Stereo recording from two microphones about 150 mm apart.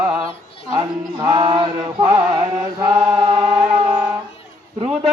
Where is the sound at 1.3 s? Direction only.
30° right (ahead or behind).